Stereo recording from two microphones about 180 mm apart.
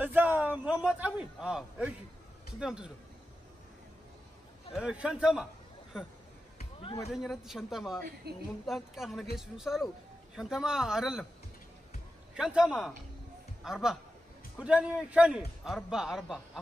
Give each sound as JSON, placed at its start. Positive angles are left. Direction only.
{"t": 0.0, "sound": "a man's voice", "side_deg": -10}
{"t": 4.7, "sound": "a man's voice", "side_deg": -5}
{"t": 6.8, "sound": "speech", "side_deg": 30}
{"t": 7.1, "sound": "a man's voice", "side_deg": 0}
{"t": 8.3, "sound": "speech", "side_deg": -65}
{"t": 8.6, "sound": "a man's voice", "side_deg": 0}
{"t": 12.4, "sound": "a man's voice", "side_deg": -5}